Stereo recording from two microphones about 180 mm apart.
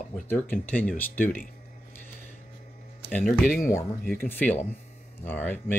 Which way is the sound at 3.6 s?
15° left (ahead or behind).